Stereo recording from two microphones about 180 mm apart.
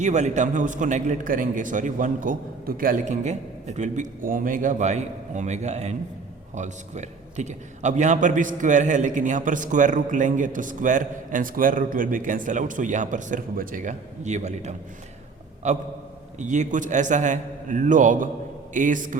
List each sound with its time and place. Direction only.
0.0 s a man's voice: 40° right (ahead or behind)